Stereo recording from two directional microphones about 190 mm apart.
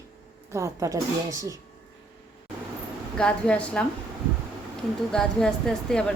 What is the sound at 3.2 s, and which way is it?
Speech, 5° left (ahead or behind).